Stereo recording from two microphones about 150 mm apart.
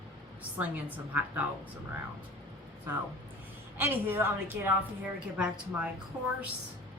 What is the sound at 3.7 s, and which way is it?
A woman's voice, 15° right (ahead or behind).